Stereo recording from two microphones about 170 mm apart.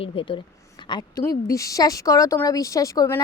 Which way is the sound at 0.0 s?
30° left (ahead or behind).